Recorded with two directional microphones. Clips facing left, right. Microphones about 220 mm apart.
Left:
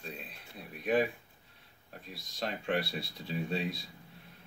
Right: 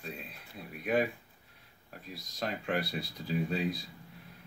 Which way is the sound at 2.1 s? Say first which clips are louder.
Right 1 dB; 25° left (ahead or behind).